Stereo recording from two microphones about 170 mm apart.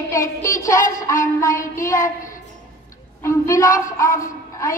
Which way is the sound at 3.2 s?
15° left (ahead or behind).